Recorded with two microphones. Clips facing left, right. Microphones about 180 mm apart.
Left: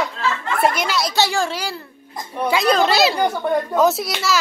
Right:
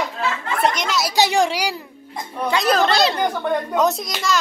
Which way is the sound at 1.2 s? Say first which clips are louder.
Right 5 dB; 20° right (ahead or behind).